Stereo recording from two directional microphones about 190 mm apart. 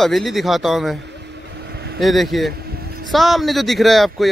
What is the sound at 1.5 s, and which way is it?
Vehicle, 60° right (ahead or behind).